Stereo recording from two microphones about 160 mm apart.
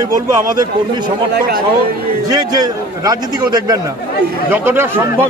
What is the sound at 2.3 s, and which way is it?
Speech, 25° right (ahead or behind).